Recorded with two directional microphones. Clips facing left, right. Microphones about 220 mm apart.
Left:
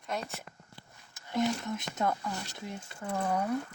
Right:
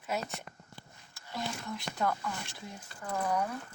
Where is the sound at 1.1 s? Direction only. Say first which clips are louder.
Left 9 dB; 20° left (ahead or behind).